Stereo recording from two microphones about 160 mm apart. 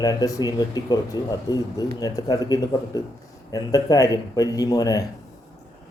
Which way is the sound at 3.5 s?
20° left (ahead or behind).